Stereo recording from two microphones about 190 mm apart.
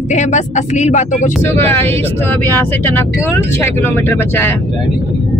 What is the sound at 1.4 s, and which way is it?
Speech, 10° left (ahead or behind).